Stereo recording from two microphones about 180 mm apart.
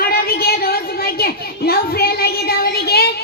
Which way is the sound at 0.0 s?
60° left (ahead or behind).